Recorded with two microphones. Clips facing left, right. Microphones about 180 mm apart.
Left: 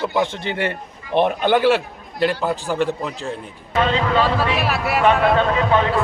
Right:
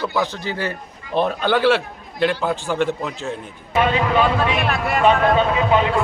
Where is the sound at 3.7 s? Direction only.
15° right (ahead or behind).